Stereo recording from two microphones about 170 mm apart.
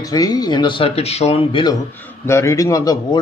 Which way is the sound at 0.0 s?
20° left (ahead or behind).